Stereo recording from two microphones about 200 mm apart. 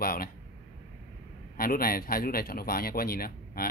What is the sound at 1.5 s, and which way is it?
A man's voice, 45° left (ahead or behind).